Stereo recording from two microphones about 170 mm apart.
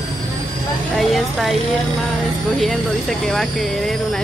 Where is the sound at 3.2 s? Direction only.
5° left (ahead or behind).